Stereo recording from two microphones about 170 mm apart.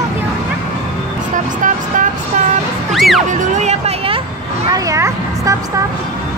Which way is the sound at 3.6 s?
40° right (ahead or behind).